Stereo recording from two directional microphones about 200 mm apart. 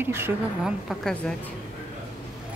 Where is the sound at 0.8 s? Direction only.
5° left (ahead or behind).